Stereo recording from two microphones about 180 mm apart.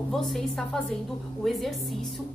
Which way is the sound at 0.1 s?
Centre (ahead or behind).